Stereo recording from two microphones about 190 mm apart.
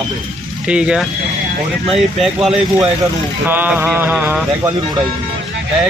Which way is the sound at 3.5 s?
10° right (ahead or behind).